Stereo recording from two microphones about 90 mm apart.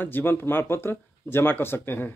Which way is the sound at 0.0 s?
25° left (ahead or behind).